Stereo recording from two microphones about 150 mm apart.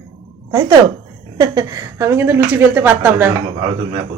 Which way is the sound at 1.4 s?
25° right (ahead or behind).